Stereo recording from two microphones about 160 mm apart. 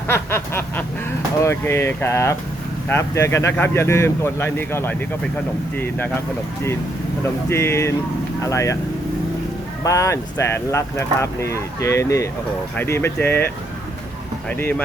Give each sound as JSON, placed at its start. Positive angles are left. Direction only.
{"t": 0.1, "sound": "a sound", "side_deg": 15}
{"t": 1.4, "sound": "speech", "side_deg": 15}
{"t": 7.5, "sound": "speech", "side_deg": 15}
{"t": 9.8, "sound": "speech", "side_deg": 20}